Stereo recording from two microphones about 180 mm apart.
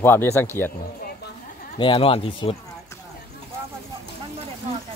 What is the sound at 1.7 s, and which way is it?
Speech, 30° left (ahead or behind).